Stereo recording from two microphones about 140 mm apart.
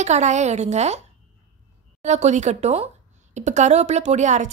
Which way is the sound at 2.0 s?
55° right (ahead or behind).